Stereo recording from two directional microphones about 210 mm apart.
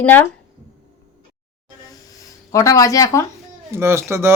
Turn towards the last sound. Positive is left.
turn(degrees=-10)  # may be behind; listen again after turning